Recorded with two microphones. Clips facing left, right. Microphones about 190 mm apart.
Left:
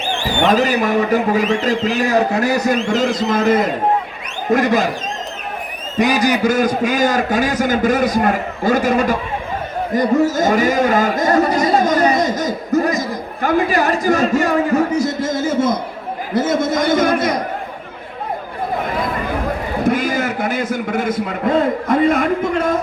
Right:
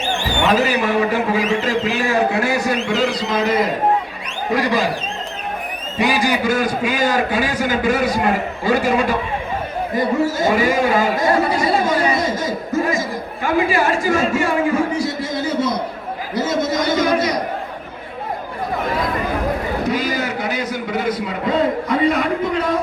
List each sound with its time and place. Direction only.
0.4 s a man's voice: 40° left (ahead or behind)
6.0 s a man's voice: 40° left (ahead or behind)
12.4 s a sound: 40° left (ahead or behind)
13.4 s a man's voice: 40° left (ahead or behind)
19.8 s a man's voice: 50° left (ahead or behind)